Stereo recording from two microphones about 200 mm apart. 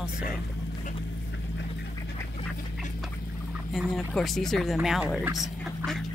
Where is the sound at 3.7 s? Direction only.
Centre (ahead or behind).